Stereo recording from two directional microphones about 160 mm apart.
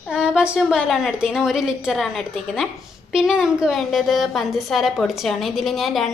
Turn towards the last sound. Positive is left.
turn(degrees=0)  # may be behind; listen again after turning